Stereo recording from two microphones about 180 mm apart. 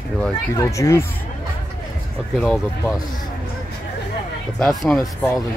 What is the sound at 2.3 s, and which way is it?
Speech, 5° left (ahead or behind).